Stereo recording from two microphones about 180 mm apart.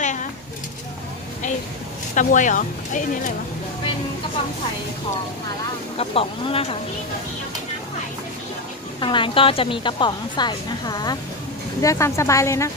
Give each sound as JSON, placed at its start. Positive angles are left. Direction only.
{"t": 0.0, "sound": "bird", "side_deg": 45}
{"t": 2.1, "sound": "speech", "side_deg": 45}
{"t": 5.9, "sound": "speech", "side_deg": 30}
{"t": 9.0, "sound": "a woman's voice", "side_deg": 30}